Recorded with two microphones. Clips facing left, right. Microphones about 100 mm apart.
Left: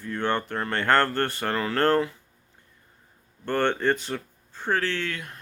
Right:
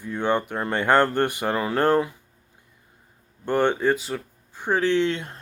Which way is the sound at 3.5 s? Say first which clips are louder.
Right 3 dB; 10° right (ahead or behind).